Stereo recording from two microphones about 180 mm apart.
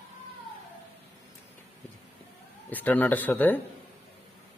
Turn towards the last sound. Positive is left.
turn(degrees=10)  # may be behind; listen again after turning